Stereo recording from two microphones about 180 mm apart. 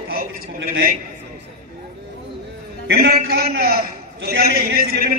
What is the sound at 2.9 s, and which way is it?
A man's voice, 60° right (ahead or behind).